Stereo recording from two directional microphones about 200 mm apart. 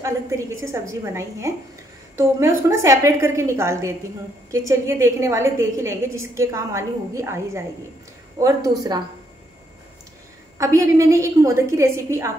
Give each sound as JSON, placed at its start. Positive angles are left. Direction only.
{"t": 0.0, "sound": "a woman's voice", "side_deg": -15}
{"t": 2.7, "sound": "a woman's voice", "side_deg": -15}
{"t": 10.6, "sound": "a woman's voice", "side_deg": -15}